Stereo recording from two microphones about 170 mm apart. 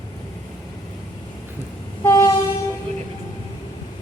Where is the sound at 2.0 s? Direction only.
20° left (ahead or behind).